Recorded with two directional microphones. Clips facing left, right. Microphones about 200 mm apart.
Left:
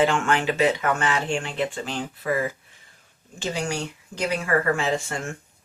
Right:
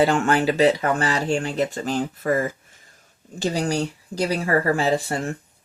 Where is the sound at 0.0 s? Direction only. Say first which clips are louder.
Right 3 dB; 35° right (ahead or behind).